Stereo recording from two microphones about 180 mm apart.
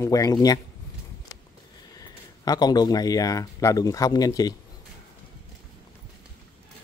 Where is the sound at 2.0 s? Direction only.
20° left (ahead or behind).